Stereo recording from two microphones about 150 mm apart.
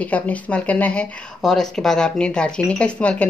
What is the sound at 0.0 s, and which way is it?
Speech, 10° left (ahead or behind).